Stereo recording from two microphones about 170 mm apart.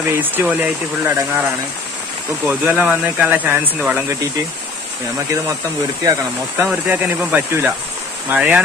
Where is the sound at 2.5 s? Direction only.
10° right (ahead or behind).